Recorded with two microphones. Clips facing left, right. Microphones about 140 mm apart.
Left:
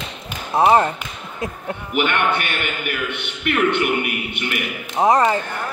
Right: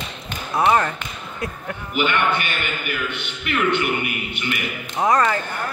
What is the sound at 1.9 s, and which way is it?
A man's voice, 60° left (ahead or behind).